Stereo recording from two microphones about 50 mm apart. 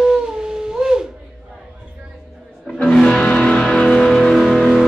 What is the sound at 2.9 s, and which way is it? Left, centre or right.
Music, centre.